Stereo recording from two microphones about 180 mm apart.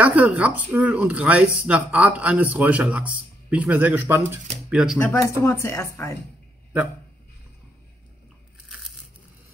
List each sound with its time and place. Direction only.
0.0 s speech: 10° right (ahead or behind)
5.0 s speech: 15° left (ahead or behind)